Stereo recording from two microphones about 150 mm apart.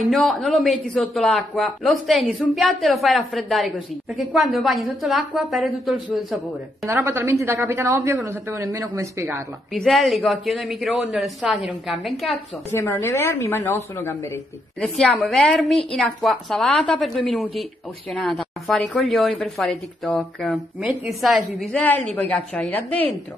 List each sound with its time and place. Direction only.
0.0 s a woman's voice: centre (ahead or behind)
6.9 s a man's voice: 15° right (ahead or behind)
9.8 s a woman's voice: centre (ahead or behind)
12.7 s a woman's voice: 15° left (ahead or behind); by 21.5 s centre (ahead or behind)
21.7 s a woman's voice: 10° left (ahead or behind)